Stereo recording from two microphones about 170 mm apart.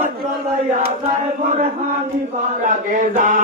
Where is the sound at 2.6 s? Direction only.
50° right (ahead or behind).